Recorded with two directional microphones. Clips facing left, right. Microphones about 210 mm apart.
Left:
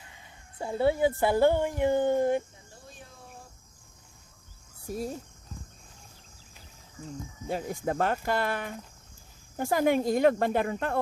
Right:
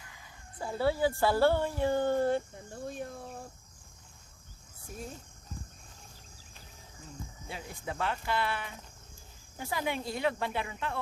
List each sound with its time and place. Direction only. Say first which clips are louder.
0.0 s speech: left 1 dB; 25° left (ahead or behind)
2.8 s a sound: right 13 dB; 55° right (ahead or behind)
4.9 s speech: left 9 dB; 35° left (ahead or behind)
7.4 s speech: left 10 dB; 45° left (ahead or behind)